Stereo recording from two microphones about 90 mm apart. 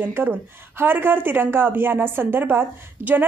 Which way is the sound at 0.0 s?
25° right (ahead or behind).